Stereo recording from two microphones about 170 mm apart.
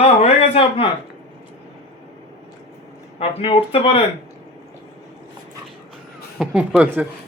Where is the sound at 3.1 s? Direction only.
30° left (ahead or behind).